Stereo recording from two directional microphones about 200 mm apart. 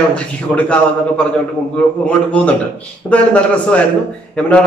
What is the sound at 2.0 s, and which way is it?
A man's voice, 5° left (ahead or behind).